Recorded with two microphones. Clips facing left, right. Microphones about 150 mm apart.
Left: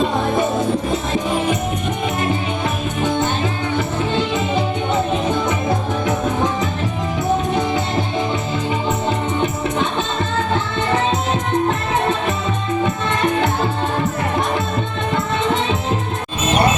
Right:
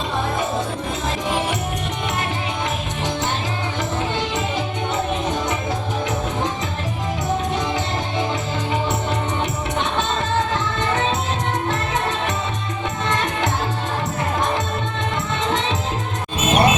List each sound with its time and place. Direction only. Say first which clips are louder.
16.5 s music: even; 20° right (ahead or behind)